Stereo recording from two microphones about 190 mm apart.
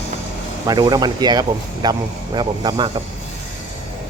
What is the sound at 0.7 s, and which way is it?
Speech, 20° right (ahead or behind).